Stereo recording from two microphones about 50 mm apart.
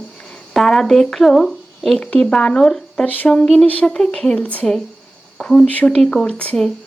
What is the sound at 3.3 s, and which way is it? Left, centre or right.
Speech, centre.